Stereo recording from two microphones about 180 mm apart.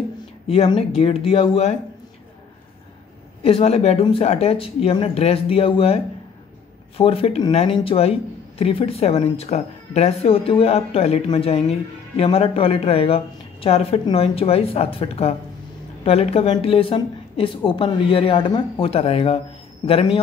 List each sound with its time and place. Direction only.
0.5 s speech: 35° left (ahead or behind)
3.4 s speech: 35° left (ahead or behind)
7.0 s speech: 30° left (ahead or behind)